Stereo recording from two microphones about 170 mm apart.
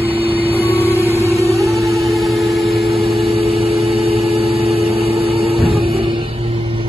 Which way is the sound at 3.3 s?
35° right (ahead or behind).